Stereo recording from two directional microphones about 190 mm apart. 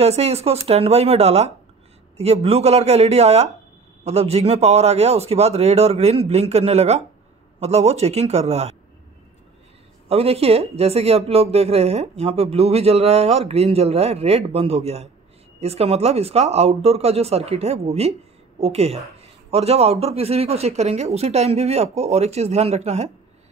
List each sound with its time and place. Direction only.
0.0 s speech: 35° right (ahead or behind)
10.0 s speech: 30° right (ahead or behind)